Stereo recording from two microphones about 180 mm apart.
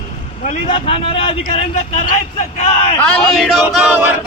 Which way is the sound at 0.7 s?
30° left (ahead or behind).